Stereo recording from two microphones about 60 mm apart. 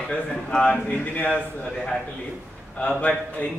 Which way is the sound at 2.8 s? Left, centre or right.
Centre.